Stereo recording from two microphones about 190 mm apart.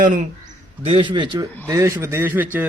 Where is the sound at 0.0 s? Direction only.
45° right (ahead or behind).